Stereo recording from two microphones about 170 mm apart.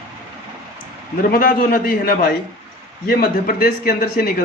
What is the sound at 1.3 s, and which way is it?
Speech, 55° left (ahead or behind).